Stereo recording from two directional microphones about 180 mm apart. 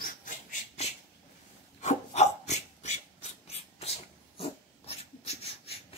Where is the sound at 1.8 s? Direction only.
40° left (ahead or behind).